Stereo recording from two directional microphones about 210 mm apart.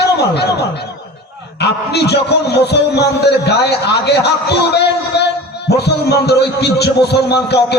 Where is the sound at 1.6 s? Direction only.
50° left (ahead or behind).